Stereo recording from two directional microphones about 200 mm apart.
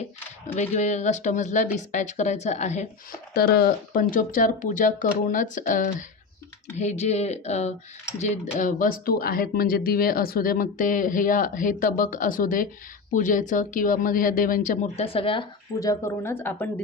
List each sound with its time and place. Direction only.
0.4 s speech: 35° left (ahead or behind)
3.3 s speech: 50° left (ahead or behind); by 16.8 s 10° left (ahead or behind)